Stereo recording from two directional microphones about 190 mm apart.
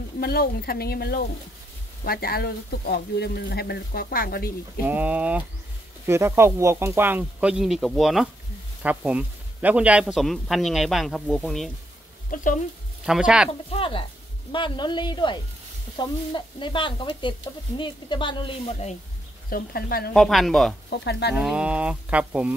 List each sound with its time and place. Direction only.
0.2 s speech: 55° left (ahead or behind)
4.8 s speech: 10° right (ahead or behind)
12.3 s speech: 45° left (ahead or behind)
13.0 s speech: 5° right (ahead or behind)
13.5 s speech: 30° left (ahead or behind)
19.5 s speech: 50° left (ahead or behind)
20.2 s speech: centre (ahead or behind)
20.9 s speech: 60° left (ahead or behind)
21.4 s speech: 5° right (ahead or behind)